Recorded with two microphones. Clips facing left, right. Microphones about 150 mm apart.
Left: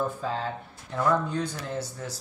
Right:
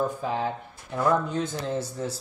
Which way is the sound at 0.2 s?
15° right (ahead or behind).